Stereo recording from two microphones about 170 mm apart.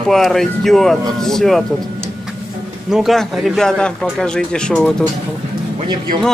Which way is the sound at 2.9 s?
Centre (ahead or behind).